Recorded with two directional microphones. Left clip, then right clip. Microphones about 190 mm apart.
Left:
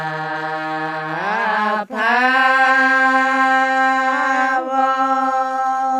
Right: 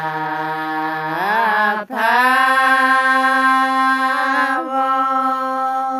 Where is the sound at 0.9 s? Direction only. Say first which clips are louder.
Right 5 dB; 35° right (ahead or behind).